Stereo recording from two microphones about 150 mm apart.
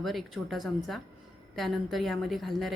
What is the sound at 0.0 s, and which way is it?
A woman's voice, centre (ahead or behind).